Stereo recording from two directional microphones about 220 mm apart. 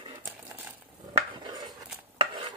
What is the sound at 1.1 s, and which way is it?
Dishes, 20° right (ahead or behind).